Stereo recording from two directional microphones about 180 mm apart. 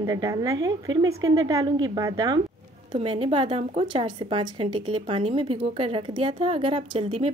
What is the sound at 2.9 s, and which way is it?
A woman's voice, 30° right (ahead or behind).